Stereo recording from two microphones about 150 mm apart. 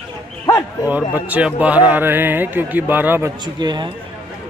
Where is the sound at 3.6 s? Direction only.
30° right (ahead or behind).